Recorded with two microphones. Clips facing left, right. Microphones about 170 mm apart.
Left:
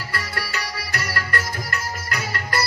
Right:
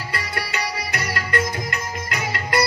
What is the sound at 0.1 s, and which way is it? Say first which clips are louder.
Music: right 1 dB; 20° right (ahead or behind).